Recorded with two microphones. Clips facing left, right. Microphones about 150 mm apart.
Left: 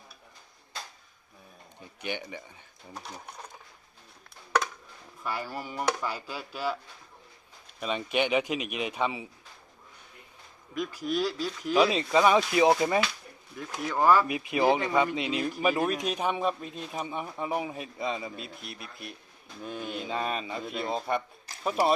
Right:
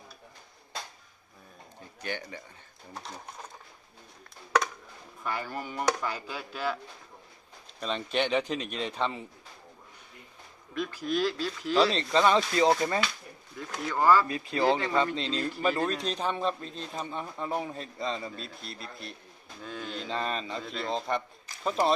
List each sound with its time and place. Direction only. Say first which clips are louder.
2.0 s speech: left 1 dB; 15° left (ahead or behind)
2.9 s speech: even; centre (ahead or behind)
5.2 s speech: even; 5° left (ahead or behind)
7.8 s speech: left 1 dB; 10° left (ahead or behind)
10.8 s speech: even; 10° left (ahead or behind)